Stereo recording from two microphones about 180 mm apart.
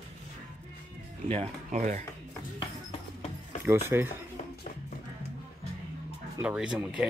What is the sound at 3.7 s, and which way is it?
Speech, 15° right (ahead or behind).